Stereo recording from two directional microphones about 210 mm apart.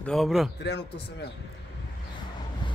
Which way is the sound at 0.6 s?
55° left (ahead or behind).